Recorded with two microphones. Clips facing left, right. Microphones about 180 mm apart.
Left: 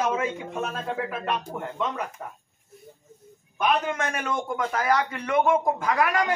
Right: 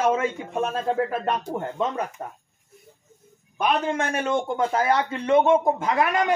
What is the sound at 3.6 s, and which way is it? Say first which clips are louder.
A man's voice: right 1 dB; 30° right (ahead or behind).